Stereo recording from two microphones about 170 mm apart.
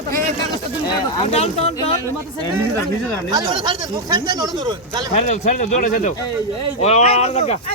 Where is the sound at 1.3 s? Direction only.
35° left (ahead or behind).